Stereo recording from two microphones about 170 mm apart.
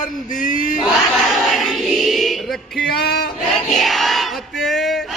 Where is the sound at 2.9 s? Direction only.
65° left (ahead or behind).